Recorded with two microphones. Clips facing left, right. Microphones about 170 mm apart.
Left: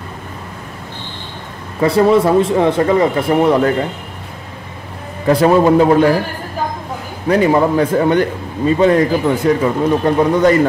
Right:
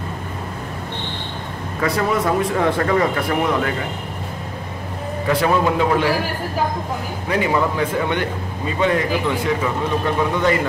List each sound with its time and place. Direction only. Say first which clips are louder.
1.8 s speech: left 9 dB; 30° left (ahead or behind)
5.3 s speech: left 8 dB; 40° left (ahead or behind)
7.2 s speech: left 7 dB; 40° left (ahead or behind)